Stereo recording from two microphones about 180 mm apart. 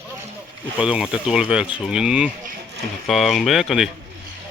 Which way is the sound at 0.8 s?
5° right (ahead or behind).